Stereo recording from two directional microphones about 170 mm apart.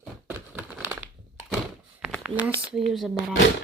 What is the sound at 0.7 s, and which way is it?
Crushing, 10° right (ahead or behind).